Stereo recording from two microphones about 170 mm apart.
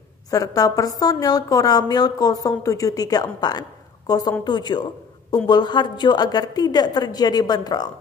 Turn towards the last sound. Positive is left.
turn(degrees=25)  # may be behind; listen again after turning